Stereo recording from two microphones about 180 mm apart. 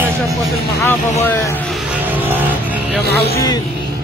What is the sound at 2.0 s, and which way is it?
Music, 10° right (ahead or behind).